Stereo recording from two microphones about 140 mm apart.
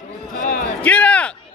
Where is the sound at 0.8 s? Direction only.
10° left (ahead or behind).